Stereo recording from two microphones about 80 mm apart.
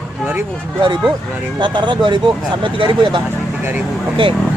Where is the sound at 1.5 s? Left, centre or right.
Right.